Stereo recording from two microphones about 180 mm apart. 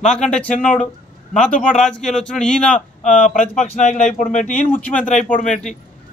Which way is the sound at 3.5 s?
45° left (ahead or behind).